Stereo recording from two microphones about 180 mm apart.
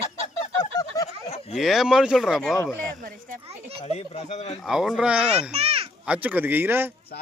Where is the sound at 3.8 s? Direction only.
35° left (ahead or behind).